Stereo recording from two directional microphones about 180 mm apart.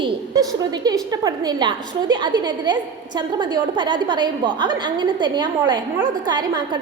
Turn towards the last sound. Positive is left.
turn(degrees=-20)  # may be behind; listen again after turning